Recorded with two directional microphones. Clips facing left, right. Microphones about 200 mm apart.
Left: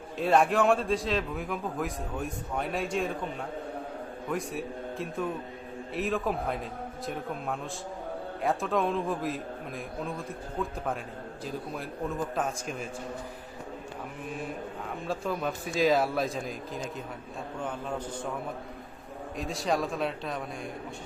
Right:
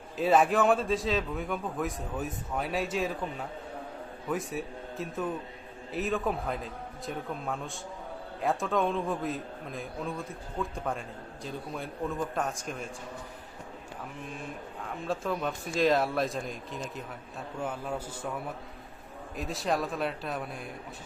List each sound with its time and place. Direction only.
0.2 s a man's voice: centre (ahead or behind)
4.3 s a man's voice: centre (ahead or behind)
15.0 s a man's voice: centre (ahead or behind)
19.4 s a man's voice: centre (ahead or behind)